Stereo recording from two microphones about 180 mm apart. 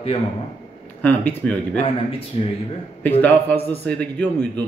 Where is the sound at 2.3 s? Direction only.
30° left (ahead or behind).